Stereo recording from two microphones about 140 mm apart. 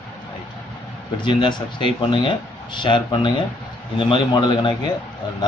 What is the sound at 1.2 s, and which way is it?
Speech, 35° left (ahead or behind).